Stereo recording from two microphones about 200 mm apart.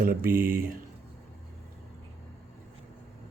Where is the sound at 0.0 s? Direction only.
45° right (ahead or behind).